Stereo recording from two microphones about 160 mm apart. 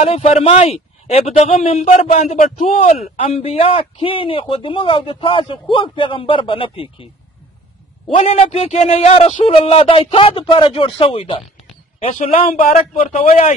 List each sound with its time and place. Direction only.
0.0 s speech: 35° left (ahead or behind)
8.2 s speech: 40° left (ahead or behind)
12.0 s speech: 45° left (ahead or behind)
12.9 s speech: 45° left (ahead or behind)